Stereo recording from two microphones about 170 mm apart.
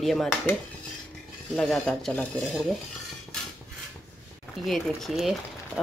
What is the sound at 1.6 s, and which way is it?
Speech, centre (ahead or behind).